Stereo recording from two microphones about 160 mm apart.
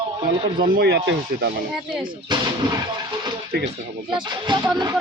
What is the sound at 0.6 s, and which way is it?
Speech, 70° right (ahead or behind).